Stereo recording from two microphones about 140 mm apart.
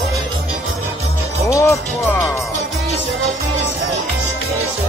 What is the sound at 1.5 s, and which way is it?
Music, 20° left (ahead or behind).